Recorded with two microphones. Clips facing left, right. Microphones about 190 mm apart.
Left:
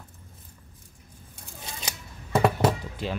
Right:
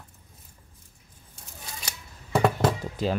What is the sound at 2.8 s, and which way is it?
Music, 40° right (ahead or behind).